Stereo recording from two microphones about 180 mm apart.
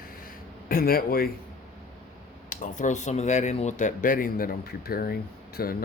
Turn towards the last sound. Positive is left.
turn(degrees=55)  # may be behind; listen again after turning